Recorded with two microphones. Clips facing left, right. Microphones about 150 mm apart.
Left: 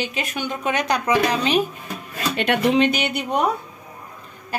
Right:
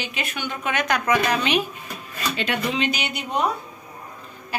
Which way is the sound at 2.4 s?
60° left (ahead or behind).